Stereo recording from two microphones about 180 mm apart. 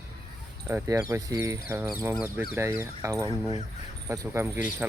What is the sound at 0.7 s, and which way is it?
Speech, 15° right (ahead or behind).